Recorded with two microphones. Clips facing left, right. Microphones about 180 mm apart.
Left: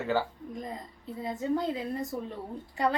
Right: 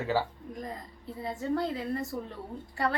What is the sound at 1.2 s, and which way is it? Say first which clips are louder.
Speech: left 1 dB; 20° left (ahead or behind).